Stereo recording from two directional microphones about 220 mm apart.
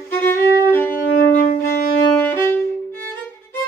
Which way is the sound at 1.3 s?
40° left (ahead or behind).